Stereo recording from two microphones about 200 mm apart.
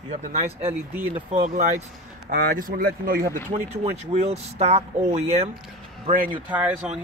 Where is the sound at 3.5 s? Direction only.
35° right (ahead or behind).